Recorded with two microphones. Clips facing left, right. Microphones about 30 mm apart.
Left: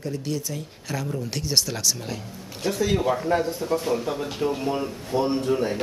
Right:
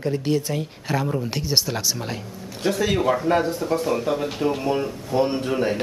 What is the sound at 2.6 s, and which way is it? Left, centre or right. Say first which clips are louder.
Speech: right 2 dB; right.